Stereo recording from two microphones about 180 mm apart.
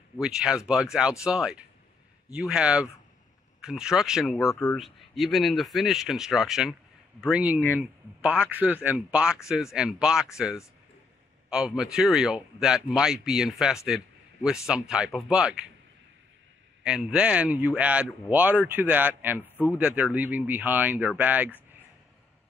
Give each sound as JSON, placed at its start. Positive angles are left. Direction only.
{"t": 0.2, "sound": "speech", "side_deg": -5}
{"t": 4.5, "sound": "speech", "side_deg": 20}
{"t": 4.7, "sound": "speech", "side_deg": 0}
{"t": 16.8, "sound": "speech", "side_deg": -5}